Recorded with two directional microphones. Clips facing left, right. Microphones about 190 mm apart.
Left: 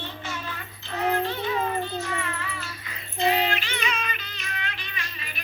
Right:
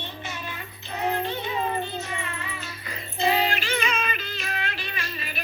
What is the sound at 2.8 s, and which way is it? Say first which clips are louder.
Music: even; 40° right (ahead or behind).